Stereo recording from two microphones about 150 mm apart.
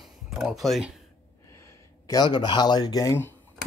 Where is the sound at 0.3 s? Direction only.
Centre (ahead or behind).